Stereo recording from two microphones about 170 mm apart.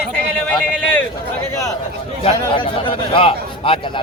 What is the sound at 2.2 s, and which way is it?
A man's voice, 30° left (ahead or behind).